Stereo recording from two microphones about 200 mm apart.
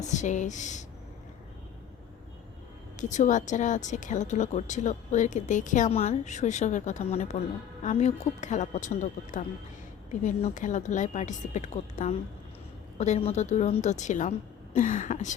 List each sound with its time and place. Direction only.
0.0 s speech: 35° left (ahead or behind)
3.0 s speech: 40° left (ahead or behind)